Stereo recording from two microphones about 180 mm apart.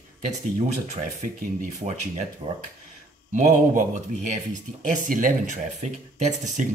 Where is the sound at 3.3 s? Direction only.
45° right (ahead or behind).